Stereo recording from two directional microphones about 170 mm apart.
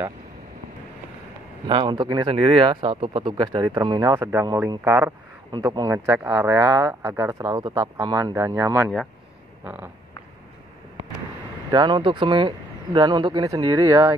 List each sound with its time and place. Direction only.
1.7 s speech: 25° right (ahead or behind)
11.7 s speech: 25° right (ahead or behind)